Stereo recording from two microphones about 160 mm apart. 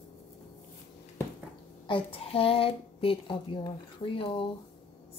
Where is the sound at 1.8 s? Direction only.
35° left (ahead or behind).